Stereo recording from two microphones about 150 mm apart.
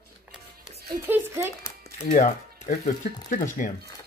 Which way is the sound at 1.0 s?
15° right (ahead or behind).